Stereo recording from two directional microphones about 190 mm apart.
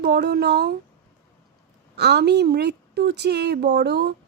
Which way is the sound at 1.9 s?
60° right (ahead or behind).